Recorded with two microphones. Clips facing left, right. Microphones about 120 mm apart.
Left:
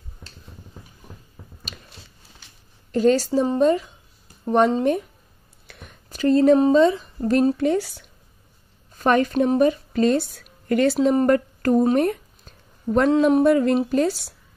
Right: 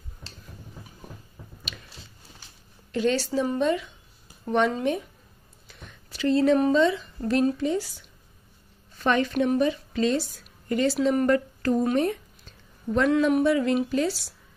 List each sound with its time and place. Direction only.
2.9 s speech: 40° left (ahead or behind)
5.7 s a sound: 60° left (ahead or behind)
6.0 s speech: 45° left (ahead or behind)
7.6 s speech: 65° left (ahead or behind)
8.9 s a woman's voice: 45° left (ahead or behind); by 11.0 s 65° left (ahead or behind)
11.0 s a woman's voice: 40° left (ahead or behind)
12.0 s a sound: 45° left (ahead or behind)
13.1 s speech: 30° left (ahead or behind)
13.4 s a woman's voice: 45° left (ahead or behind)